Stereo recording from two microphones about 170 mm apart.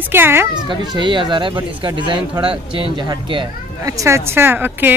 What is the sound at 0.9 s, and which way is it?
Speech, 25° right (ahead or behind).